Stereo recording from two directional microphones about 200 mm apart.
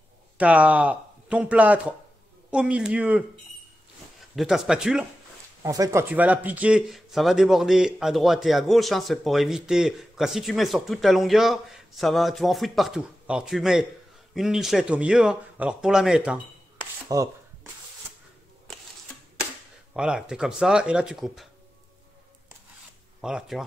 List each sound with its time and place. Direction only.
0.4 s speech: 5° right (ahead or behind)
4.4 s speech: centre (ahead or behind)
5.6 s speech: 15° right (ahead or behind)
17.1 s speech: 20° right (ahead or behind)
19.9 s speech: 5° right (ahead or behind)
23.2 s speech: centre (ahead or behind)